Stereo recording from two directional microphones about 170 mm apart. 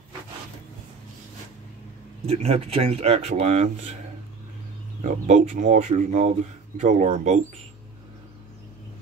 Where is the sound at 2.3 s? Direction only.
35° right (ahead or behind).